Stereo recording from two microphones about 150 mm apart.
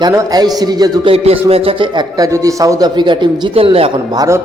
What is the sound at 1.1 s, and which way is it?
A man's voice, 40° right (ahead or behind).